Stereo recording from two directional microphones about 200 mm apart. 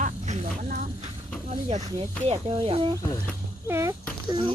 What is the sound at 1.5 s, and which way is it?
Speech, 35° right (ahead or behind).